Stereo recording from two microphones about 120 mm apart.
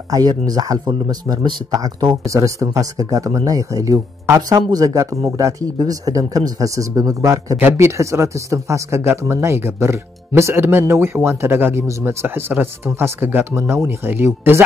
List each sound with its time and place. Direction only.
0.1 s speech: 35° right (ahead or behind); by 14.6 s 20° right (ahead or behind)